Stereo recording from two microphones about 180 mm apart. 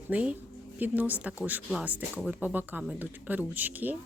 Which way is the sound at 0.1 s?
5° right (ahead or behind).